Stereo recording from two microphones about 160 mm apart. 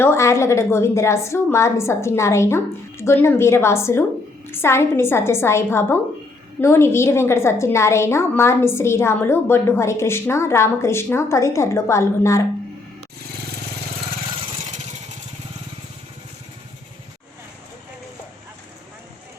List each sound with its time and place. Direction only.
0.0 s a woman's voice: 15° left (ahead or behind)